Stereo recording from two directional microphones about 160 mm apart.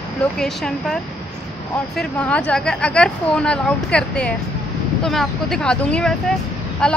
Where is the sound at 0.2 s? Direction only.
5° left (ahead or behind).